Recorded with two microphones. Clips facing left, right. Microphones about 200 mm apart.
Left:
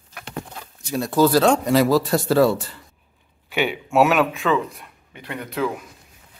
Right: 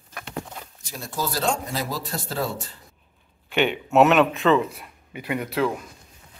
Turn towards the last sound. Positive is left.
turn(degrees=0)  # may be behind; listen again after turning